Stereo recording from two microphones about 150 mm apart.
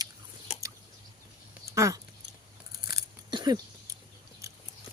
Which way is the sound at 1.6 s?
20° right (ahead or behind).